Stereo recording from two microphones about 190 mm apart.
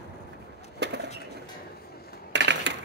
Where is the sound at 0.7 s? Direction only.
65° right (ahead or behind).